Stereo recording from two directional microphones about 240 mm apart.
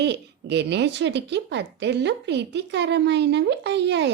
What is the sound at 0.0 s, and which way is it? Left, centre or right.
Speech, right.